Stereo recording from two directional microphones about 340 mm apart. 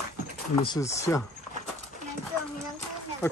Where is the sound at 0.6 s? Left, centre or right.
Centre.